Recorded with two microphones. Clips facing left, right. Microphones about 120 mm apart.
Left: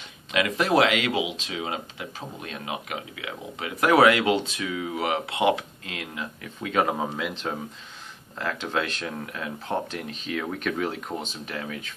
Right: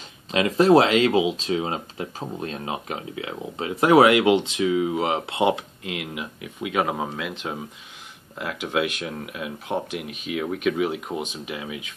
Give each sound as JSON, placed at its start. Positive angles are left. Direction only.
{"t": 0.3, "sound": "speech", "side_deg": -30}